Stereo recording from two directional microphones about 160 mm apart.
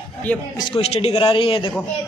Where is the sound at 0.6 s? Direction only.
35° left (ahead or behind).